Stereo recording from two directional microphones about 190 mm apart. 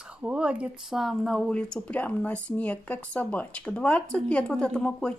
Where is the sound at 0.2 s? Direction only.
5° right (ahead or behind).